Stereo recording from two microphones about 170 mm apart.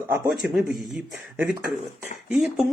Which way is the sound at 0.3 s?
Centre (ahead or behind).